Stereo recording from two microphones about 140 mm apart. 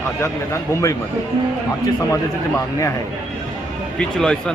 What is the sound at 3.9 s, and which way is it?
Speech, 5° left (ahead or behind).